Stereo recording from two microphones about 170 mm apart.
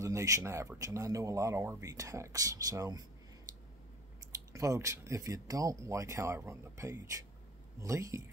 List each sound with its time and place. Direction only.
0.0 s speech: 20° right (ahead or behind)
4.3 s speech: 20° right (ahead or behind)